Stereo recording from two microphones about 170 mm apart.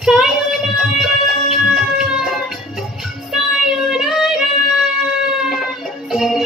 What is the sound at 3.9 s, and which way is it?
Child singing, 5° right (ahead or behind).